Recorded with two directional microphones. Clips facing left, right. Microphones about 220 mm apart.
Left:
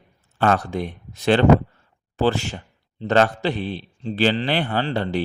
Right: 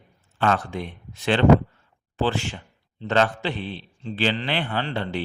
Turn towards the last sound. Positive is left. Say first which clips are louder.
# left 4 dB
turn(degrees=40)  # may be behind; listen again after turning